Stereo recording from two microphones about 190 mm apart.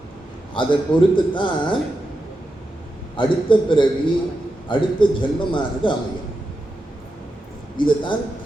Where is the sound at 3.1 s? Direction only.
25° left (ahead or behind).